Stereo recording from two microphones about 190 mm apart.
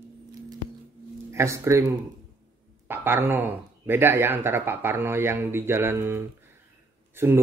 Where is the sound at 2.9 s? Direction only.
10° right (ahead or behind).